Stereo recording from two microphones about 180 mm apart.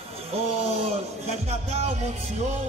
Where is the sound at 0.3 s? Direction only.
35° right (ahead or behind).